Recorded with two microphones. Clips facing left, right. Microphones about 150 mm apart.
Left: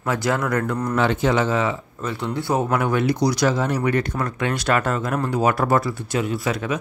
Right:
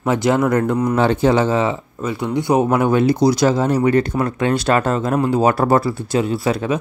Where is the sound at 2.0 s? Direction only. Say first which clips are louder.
Right 6 dB; 10° right (ahead or behind).